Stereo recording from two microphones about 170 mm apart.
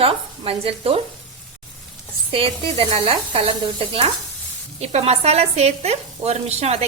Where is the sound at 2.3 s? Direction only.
35° right (ahead or behind).